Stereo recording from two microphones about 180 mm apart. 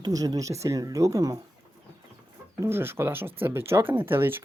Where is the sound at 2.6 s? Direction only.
15° right (ahead or behind).